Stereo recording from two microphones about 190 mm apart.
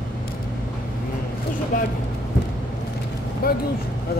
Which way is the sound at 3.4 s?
50° left (ahead or behind).